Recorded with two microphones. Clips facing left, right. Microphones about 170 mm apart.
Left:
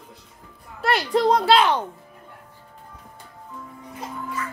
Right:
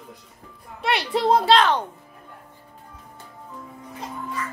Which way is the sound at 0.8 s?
Centre (ahead or behind).